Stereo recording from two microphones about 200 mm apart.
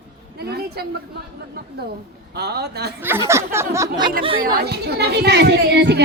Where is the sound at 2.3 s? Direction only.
55° right (ahead or behind).